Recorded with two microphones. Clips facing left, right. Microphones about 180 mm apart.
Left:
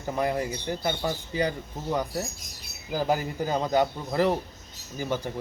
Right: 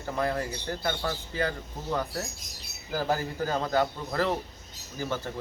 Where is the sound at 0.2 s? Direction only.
15° left (ahead or behind).